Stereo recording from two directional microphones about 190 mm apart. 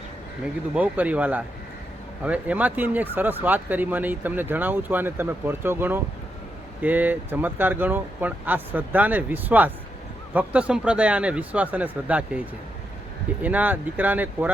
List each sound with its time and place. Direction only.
0.7 s speech: 10° right (ahead or behind)
13.4 s speech: 10° right (ahead or behind)